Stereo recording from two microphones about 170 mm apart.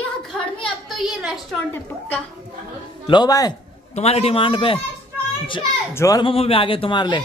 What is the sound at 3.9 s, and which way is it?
Speech, 35° left (ahead or behind).